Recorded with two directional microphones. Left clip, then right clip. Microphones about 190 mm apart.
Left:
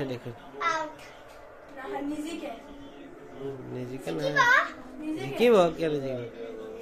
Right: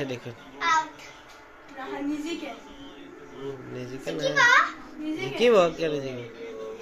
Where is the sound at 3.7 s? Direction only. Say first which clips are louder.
Right 1 dB; 20° left (ahead or behind).